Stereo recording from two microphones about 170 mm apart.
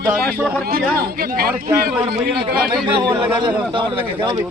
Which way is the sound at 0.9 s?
65° right (ahead or behind).